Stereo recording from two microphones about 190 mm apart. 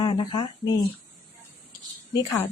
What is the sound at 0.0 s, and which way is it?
Speech, 25° left (ahead or behind).